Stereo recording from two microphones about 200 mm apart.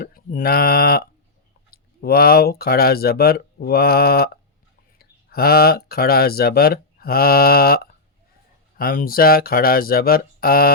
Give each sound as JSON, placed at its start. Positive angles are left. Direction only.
{"t": 0.0, "sound": "mantra", "side_deg": 45}
{"t": 1.7, "sound": "speech", "side_deg": 50}
{"t": 8.8, "sound": "speech", "side_deg": 45}